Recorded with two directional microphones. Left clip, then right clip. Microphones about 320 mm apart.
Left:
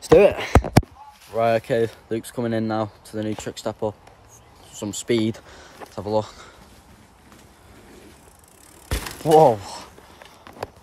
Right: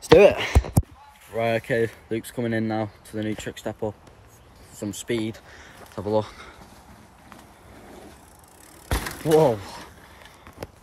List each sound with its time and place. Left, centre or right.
0.0 s speech: centre
1.3 s speech: centre
5.0 s speech: left
5.6 s speech: centre
8.8 s mechanisms: centre